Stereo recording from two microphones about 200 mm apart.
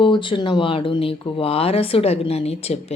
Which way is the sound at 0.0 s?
25° left (ahead or behind).